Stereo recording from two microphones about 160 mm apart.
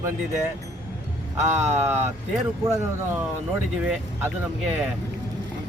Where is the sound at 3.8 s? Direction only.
5° right (ahead or behind).